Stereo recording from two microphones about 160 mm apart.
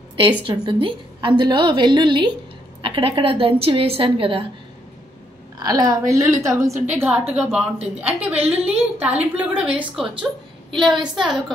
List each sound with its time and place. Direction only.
0.5 s a woman's voice: 35° right (ahead or behind)
5.6 s a woman's voice: 25° right (ahead or behind); by 10.0 s 10° right (ahead or behind)
11.1 s a woman's voice: centre (ahead or behind)